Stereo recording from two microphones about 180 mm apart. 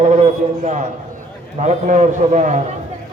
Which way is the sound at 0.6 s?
40° right (ahead or behind).